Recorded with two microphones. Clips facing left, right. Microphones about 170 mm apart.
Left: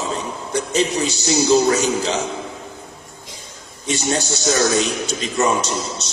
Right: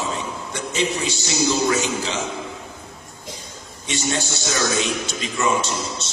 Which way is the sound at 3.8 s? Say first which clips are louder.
Left 3 dB; 40° left (ahead or behind).